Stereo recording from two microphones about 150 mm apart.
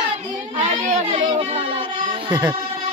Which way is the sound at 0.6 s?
55° right (ahead or behind).